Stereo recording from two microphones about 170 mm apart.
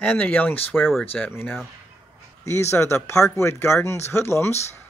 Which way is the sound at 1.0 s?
10° left (ahead or behind).